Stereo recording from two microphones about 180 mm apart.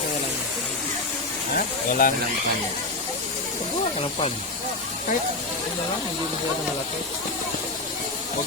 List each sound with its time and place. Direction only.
1.5 s speech: 50° left (ahead or behind)